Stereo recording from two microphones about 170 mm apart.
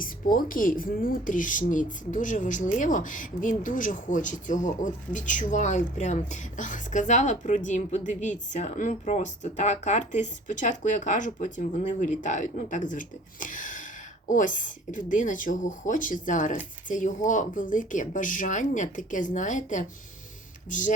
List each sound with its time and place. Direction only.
0.0 s speech: 55° left (ahead or behind)